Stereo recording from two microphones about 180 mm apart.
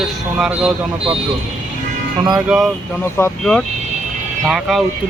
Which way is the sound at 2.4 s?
5° right (ahead or behind).